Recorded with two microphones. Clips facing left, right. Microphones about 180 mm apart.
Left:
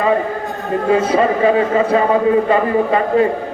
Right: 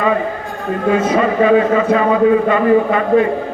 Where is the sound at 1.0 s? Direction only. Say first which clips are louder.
Even; 30° left (ahead or behind).